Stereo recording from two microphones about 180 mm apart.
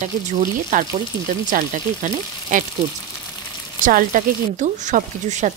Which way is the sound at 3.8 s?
50° right (ahead or behind).